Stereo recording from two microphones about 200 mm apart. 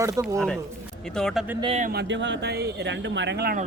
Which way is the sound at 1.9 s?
60° right (ahead or behind).